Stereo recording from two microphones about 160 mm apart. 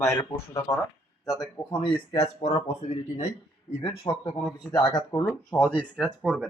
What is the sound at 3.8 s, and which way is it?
Speech, 35° left (ahead or behind).